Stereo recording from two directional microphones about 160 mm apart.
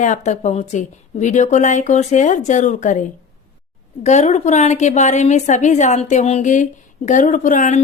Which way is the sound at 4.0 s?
45° left (ahead or behind).